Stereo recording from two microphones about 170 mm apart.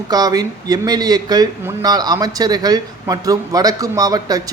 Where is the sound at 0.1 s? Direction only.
20° right (ahead or behind).